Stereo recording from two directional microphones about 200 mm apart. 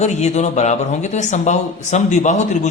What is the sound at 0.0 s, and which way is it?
A man's voice, 35° left (ahead or behind).